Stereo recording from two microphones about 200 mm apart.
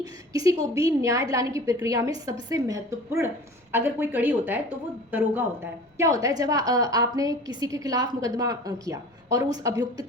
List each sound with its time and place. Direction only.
0.0 s a woman's voice: 20° right (ahead or behind)
6.0 s a woman's voice: 15° right (ahead or behind)